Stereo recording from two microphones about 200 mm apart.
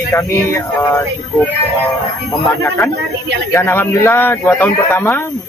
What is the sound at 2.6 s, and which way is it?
Speech, 15° left (ahead or behind).